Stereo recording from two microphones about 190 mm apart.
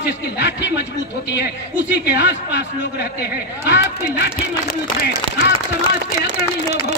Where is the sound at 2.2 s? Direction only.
60° left (ahead or behind).